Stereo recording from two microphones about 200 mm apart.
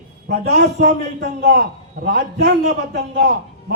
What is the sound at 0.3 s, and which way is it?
A man's voice, 50° right (ahead or behind).